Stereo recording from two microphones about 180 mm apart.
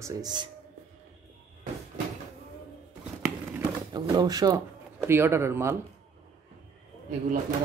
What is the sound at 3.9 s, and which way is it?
Speech, 20° right (ahead or behind).